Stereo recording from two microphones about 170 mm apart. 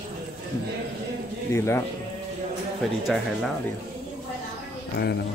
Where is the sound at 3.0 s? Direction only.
Centre (ahead or behind).